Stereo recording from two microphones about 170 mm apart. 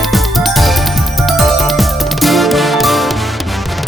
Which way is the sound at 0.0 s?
Centre (ahead or behind).